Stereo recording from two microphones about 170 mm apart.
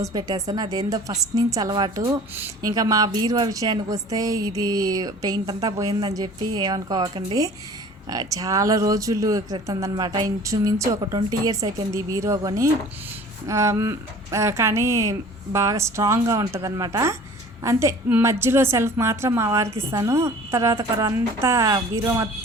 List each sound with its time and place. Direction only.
0.0 s a woman's voice: 20° right (ahead or behind)